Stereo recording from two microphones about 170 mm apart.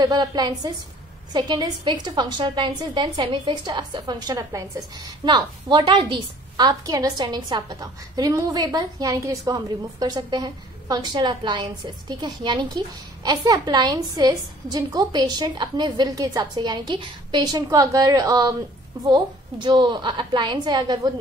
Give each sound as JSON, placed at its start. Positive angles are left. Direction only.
{"t": 0.0, "sound": "a woman's voice", "side_deg": -25}